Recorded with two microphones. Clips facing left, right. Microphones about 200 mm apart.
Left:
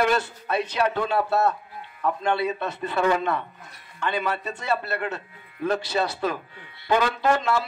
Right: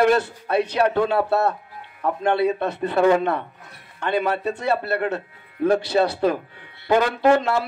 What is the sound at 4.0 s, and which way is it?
Speech, 55° right (ahead or behind).